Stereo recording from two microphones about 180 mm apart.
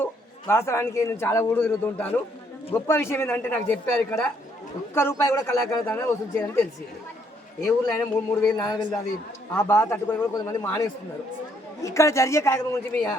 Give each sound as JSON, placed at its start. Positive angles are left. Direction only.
{"t": 0.0, "sound": "a man's voice", "side_deg": 15}
{"t": 8.4, "sound": "a man's voice", "side_deg": 15}